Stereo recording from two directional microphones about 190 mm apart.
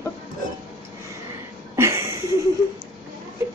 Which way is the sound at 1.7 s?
15° right (ahead or behind).